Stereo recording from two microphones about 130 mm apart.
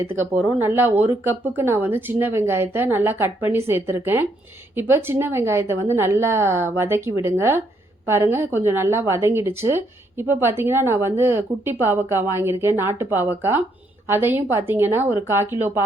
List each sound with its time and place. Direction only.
0.0 s a woman's voice: 20° right (ahead or behind)